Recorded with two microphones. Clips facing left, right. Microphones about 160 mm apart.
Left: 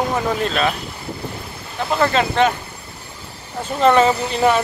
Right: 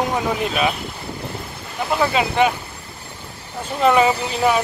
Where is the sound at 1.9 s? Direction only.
10° right (ahead or behind).